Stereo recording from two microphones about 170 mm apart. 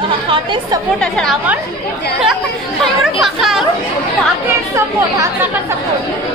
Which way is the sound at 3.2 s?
Centre (ahead or behind).